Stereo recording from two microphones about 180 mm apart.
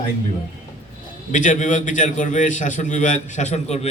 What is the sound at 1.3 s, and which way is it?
A man's voice, 45° left (ahead or behind).